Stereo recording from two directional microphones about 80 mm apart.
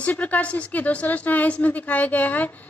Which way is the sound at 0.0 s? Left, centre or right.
Centre.